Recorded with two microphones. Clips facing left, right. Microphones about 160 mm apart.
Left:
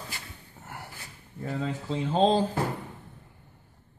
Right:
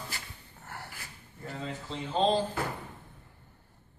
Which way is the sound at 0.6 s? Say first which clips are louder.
Left 2 dB; 5° left (ahead or behind).